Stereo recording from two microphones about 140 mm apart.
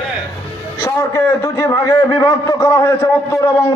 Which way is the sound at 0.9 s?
20° left (ahead or behind).